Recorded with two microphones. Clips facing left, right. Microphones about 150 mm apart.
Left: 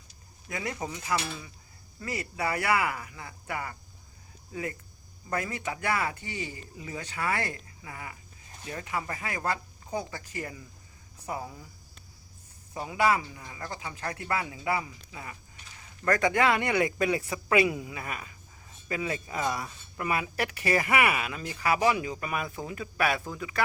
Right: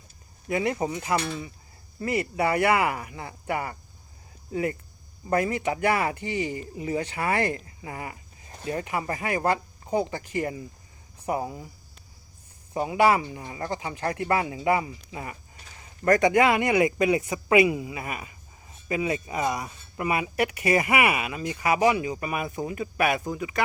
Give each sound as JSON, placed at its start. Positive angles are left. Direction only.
{"t": 0.4, "sound": "speech", "side_deg": -25}
{"t": 5.3, "sound": "speech", "side_deg": -30}
{"t": 12.8, "sound": "speech", "side_deg": -20}
{"t": 13.1, "sound": "speech", "side_deg": -35}
{"t": 16.0, "sound": "speech", "side_deg": -15}